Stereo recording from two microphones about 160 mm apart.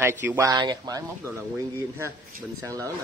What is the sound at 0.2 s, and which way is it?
Speech, 20° right (ahead or behind).